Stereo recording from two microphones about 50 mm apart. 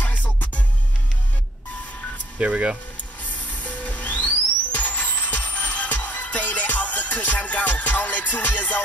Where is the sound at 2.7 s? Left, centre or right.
Left.